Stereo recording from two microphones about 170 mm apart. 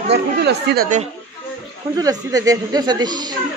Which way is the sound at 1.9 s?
20° right (ahead or behind).